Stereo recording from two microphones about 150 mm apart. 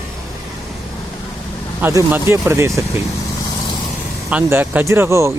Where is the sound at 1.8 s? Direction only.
15° right (ahead or behind).